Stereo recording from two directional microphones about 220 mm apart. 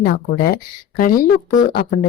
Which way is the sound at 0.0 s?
40° left (ahead or behind).